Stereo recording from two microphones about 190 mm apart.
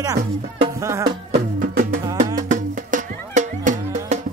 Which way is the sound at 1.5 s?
50° right (ahead or behind).